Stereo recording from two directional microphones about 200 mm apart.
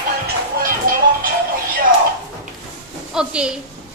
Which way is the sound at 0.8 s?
45° right (ahead or behind).